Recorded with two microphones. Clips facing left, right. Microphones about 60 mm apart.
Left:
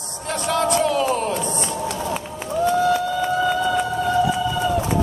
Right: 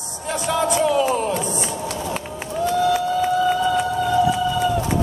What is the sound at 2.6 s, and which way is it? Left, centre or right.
Run, left.